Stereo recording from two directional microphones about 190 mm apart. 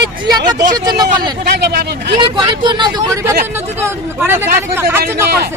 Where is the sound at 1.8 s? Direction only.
60° right (ahead or behind).